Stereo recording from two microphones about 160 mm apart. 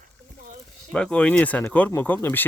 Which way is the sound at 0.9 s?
5° left (ahead or behind).